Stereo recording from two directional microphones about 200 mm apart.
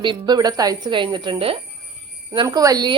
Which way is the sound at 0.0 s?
20° right (ahead or behind).